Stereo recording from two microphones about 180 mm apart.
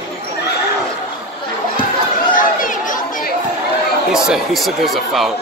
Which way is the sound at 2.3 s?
45° left (ahead or behind).